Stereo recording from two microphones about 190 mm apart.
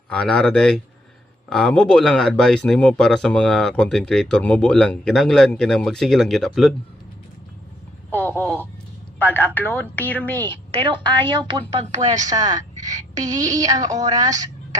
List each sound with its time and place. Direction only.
0.1 s speech: 5° left (ahead or behind)
8.1 s a woman's voice: 10° left (ahead or behind)
10.5 s a woman's voice: 25° right (ahead or behind)